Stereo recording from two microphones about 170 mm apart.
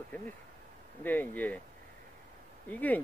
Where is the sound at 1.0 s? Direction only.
10° left (ahead or behind).